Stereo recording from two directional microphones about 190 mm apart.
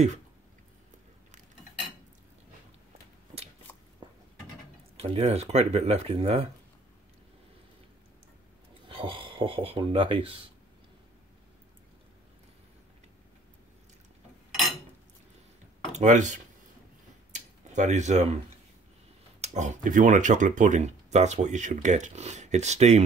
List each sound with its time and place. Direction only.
4.9 s speech: 30° right (ahead or behind)
8.8 s speech: 25° right (ahead or behind)
15.9 s speech: 40° right (ahead or behind)
17.3 s tick-tock: 40° right (ahead or behind)
19.4 s speech: 40° right (ahead or behind)